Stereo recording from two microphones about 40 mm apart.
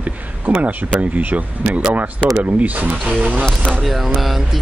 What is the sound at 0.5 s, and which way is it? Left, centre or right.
Speech, right.